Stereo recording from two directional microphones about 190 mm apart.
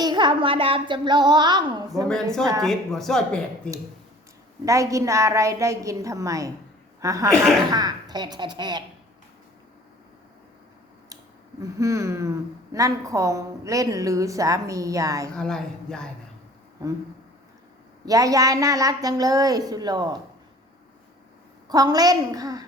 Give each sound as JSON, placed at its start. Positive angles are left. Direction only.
{"t": 0.0, "sound": "a woman's voice", "side_deg": -25}
{"t": 2.6, "sound": "speech", "side_deg": 0}
{"t": 4.6, "sound": "a woman's voice", "side_deg": -15}
{"t": 7.3, "sound": "speech", "side_deg": 0}
{"t": 7.7, "sound": "a woman's voice", "side_deg": -20}
{"t": 11.6, "sound": "a woman's voice", "side_deg": -15}
{"t": 15.3, "sound": "speech", "side_deg": 5}
{"t": 18.0, "sound": "a woman's voice", "side_deg": -20}
{"t": 21.7, "sound": "a woman's voice", "side_deg": -20}